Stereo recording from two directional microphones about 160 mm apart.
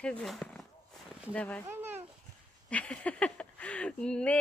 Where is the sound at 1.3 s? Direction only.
10° left (ahead or behind).